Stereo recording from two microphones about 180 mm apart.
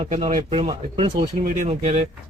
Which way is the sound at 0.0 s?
35° right (ahead or behind).